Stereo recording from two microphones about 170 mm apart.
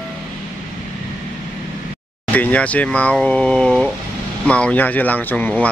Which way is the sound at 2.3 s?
10° left (ahead or behind).